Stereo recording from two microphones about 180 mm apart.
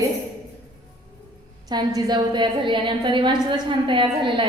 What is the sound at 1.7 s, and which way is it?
A woman's voice, 25° right (ahead or behind).